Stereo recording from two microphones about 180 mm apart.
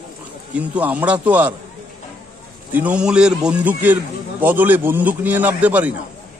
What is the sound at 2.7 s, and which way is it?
A man's voice, 5° right (ahead or behind).